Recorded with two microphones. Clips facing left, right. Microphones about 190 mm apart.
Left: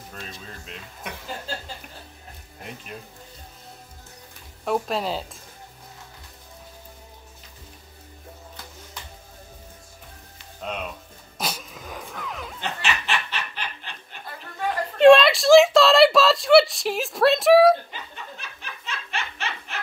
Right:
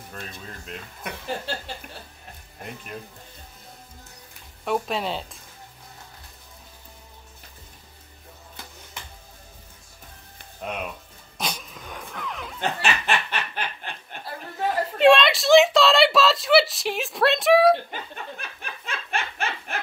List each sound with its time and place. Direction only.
4.6 s speech: centre (ahead or behind)
10.6 s speech: 10° right (ahead or behind)
11.3 s dog: 5° left (ahead or behind)
12.5 s snicker: 55° right (ahead or behind)
15.0 s a sound: centre (ahead or behind)
18.1 s snicker: 50° right (ahead or behind)